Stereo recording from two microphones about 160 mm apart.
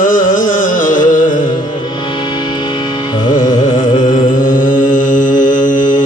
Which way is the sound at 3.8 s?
55° left (ahead or behind).